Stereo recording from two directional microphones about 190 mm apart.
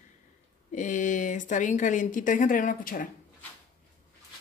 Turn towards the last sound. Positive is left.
turn(degrees=45)  # may be behind; listen again after turning